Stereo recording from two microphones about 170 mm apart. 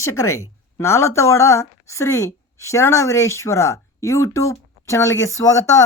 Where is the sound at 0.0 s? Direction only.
15° left (ahead or behind).